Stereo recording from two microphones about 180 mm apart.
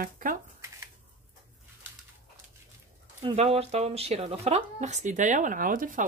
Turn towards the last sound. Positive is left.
turn(degrees=-50)  # may be behind; listen again after turning